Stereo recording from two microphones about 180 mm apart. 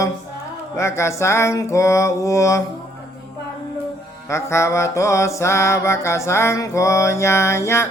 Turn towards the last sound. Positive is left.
turn(degrees=15)  # may be behind; listen again after turning